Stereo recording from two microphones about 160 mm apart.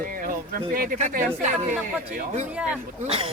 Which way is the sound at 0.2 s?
60° right (ahead or behind).